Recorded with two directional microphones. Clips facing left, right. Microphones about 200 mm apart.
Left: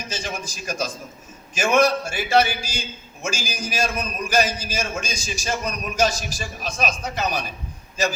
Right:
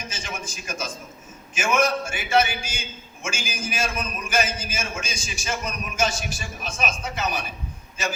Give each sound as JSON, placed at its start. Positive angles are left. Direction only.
{"t": 0.1, "sound": "a man's voice", "side_deg": 35}